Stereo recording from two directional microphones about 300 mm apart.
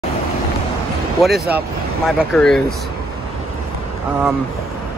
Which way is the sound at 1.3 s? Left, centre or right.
Right.